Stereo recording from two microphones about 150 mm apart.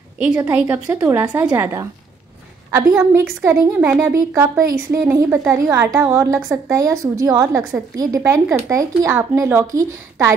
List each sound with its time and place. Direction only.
0.3 s a woman's voice: 15° right (ahead or behind)
1.4 s a woman's voice: 25° right (ahead or behind)
3.0 s a woman's voice: 10° right (ahead or behind)